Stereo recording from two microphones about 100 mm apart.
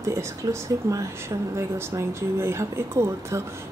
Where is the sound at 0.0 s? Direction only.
30° right (ahead or behind).